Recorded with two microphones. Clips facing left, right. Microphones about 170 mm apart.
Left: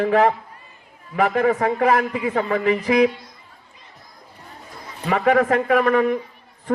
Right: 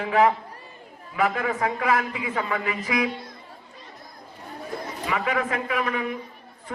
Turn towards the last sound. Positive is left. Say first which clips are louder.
# left 10 dB
turn(degrees=50)  # may be behind; listen again after turning